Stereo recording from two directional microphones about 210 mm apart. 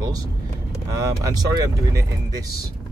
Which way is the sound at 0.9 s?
15° right (ahead or behind).